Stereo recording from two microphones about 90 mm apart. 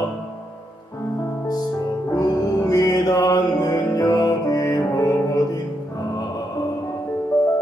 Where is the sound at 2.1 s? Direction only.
45° left (ahead or behind).